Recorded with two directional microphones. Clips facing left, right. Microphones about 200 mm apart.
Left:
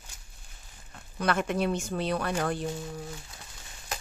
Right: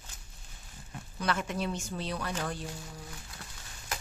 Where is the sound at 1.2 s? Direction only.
60° left (ahead or behind).